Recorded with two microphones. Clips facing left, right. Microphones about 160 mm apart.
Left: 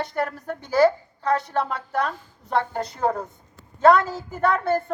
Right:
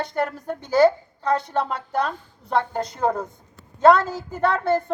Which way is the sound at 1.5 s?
20° right (ahead or behind).